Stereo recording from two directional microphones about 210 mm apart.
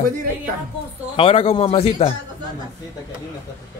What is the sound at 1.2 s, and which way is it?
Speech, 25° left (ahead or behind).